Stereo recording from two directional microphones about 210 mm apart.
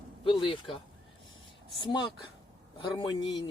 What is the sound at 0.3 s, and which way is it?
Speech, 25° left (ahead or behind).